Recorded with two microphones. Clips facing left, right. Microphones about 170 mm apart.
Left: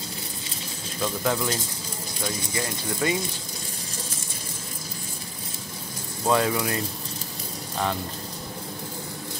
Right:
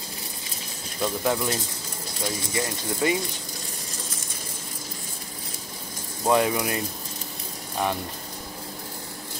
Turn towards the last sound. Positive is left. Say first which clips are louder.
# right 1 dB
turn(degrees=-15)  # may be behind; listen again after turning